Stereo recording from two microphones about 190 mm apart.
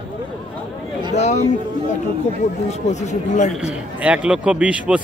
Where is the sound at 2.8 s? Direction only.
35° left (ahead or behind).